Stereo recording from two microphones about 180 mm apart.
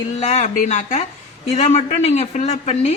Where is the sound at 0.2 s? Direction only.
40° left (ahead or behind).